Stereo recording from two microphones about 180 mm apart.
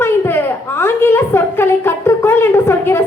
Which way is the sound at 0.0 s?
10° left (ahead or behind).